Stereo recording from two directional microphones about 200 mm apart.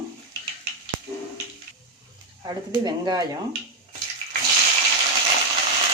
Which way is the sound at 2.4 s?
20° right (ahead or behind).